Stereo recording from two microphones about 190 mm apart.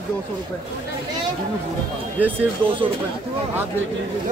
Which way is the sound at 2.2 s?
10° right (ahead or behind).